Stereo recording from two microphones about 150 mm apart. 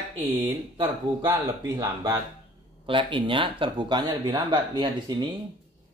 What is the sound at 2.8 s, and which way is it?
A man's voice, 35° right (ahead or behind).